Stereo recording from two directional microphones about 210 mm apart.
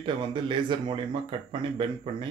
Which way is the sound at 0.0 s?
25° right (ahead or behind).